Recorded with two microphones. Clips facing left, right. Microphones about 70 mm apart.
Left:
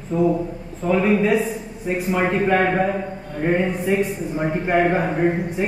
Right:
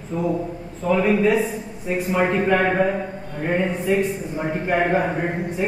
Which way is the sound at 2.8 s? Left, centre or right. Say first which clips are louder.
Right 1 dB; centre.